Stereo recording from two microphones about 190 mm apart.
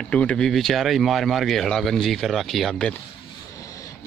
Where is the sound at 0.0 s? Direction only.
5° left (ahead or behind).